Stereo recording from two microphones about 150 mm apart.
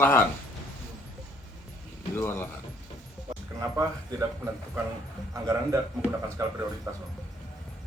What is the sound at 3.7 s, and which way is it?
Speech, 20° right (ahead or behind).